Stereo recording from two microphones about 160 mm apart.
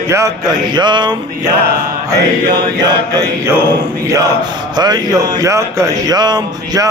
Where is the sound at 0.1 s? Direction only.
20° right (ahead or behind).